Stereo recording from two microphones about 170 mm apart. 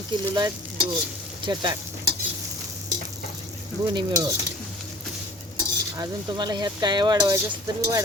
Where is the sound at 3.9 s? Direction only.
25° right (ahead or behind).